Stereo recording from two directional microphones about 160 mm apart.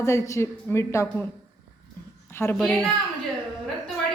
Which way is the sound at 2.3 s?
15° left (ahead or behind).